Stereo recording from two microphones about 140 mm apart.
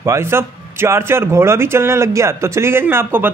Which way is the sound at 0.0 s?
20° right (ahead or behind).